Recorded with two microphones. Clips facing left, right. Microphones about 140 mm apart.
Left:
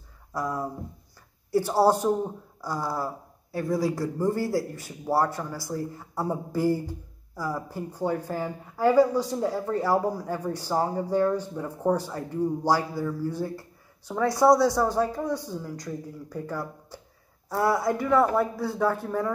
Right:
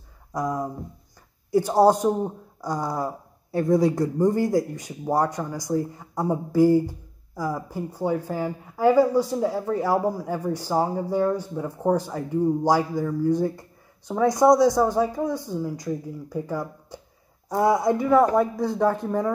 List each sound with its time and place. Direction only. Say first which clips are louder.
0.3 s speech: right 3 dB; 15° right (ahead or behind)
1.7 s speech: right 3 dB; 15° right (ahead or behind)